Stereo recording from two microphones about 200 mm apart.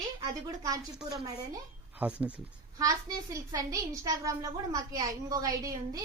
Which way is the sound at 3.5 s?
15° right (ahead or behind).